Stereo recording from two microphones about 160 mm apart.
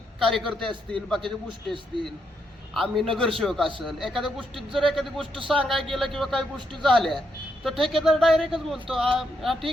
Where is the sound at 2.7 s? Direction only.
Centre (ahead or behind).